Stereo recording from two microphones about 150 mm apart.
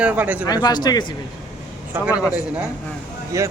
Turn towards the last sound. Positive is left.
turn(degrees=-20)  # may be behind; listen again after turning